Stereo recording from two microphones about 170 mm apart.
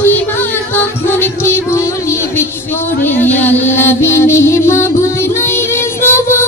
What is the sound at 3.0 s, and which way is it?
Music, 10° left (ahead or behind).